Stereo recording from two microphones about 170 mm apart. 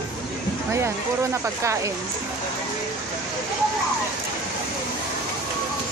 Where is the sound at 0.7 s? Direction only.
15° right (ahead or behind).